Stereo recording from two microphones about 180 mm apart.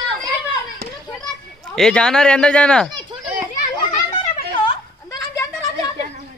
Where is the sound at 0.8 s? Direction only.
65° right (ahead or behind).